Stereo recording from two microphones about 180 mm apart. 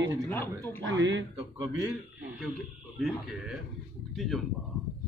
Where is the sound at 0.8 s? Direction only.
90° right.